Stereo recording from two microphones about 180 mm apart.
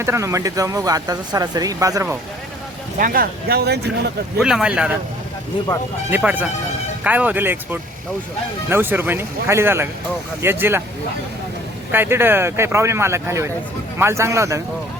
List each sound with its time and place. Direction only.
0.0 s speech: 15° right (ahead or behind)
3.0 s speech: 55° right (ahead or behind)
4.4 s speech: 5° right (ahead or behind)
6.1 s speech: 10° right (ahead or behind)
11.9 s speech: 10° right (ahead or behind)